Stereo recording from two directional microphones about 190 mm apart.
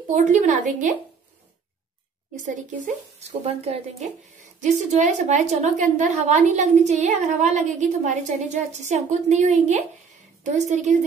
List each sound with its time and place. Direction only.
0.1 s a woman's voice: 40° right (ahead or behind)
2.3 s a woman's voice: 40° right (ahead or behind)